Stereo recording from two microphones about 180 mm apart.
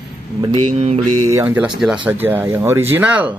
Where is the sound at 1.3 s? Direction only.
10° right (ahead or behind).